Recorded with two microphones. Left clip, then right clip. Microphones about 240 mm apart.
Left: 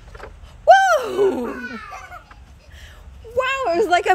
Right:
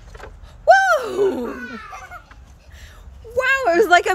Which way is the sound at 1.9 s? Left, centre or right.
Left.